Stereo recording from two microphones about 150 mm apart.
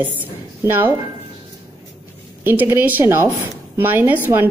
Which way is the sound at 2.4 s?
15° right (ahead or behind).